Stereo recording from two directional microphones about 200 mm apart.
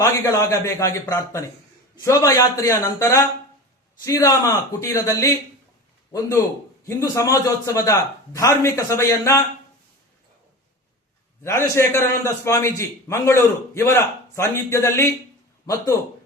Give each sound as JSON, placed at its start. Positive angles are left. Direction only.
{"t": 0.0, "sound": "a man's voice", "side_deg": 15}
{"t": 11.4, "sound": "a man's voice", "side_deg": 15}